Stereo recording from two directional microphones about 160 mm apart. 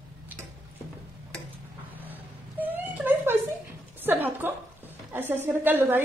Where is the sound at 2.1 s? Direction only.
10° right (ahead or behind).